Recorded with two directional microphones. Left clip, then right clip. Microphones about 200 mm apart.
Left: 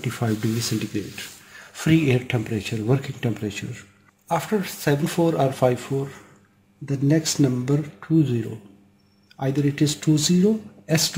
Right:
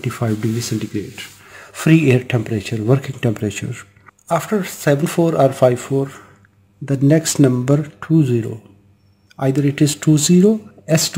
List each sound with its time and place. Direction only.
0.0 s speech: 30° right (ahead or behind); by 8.4 s 50° right (ahead or behind)
9.4 s speech: 45° right (ahead or behind)
10.9 s speech: 35° right (ahead or behind)